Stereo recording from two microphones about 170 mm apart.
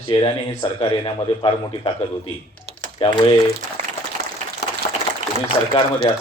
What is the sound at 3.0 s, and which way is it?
Speech, 35° left (ahead or behind).